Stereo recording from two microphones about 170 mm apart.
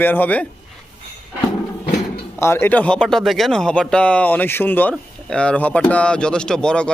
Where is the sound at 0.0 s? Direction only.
10° left (ahead or behind).